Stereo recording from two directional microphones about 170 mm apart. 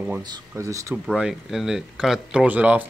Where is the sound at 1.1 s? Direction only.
5° right (ahead or behind).